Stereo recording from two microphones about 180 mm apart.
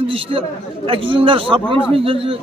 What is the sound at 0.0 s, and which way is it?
A man's voice, 30° right (ahead or behind).